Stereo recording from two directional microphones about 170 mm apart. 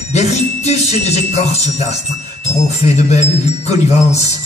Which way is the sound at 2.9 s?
40° left (ahead or behind).